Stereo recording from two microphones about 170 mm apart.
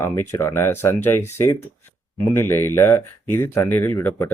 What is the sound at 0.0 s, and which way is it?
Speech, 15° left (ahead or behind).